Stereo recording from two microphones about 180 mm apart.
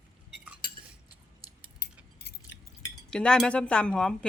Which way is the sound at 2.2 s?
65° left (ahead or behind).